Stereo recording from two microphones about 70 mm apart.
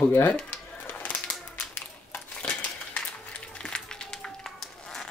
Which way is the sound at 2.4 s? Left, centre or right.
Centre.